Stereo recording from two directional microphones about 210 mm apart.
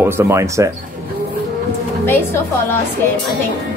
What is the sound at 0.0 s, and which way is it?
Speech, 15° right (ahead or behind).